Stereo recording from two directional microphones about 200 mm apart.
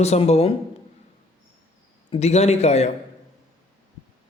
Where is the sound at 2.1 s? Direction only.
35° left (ahead or behind).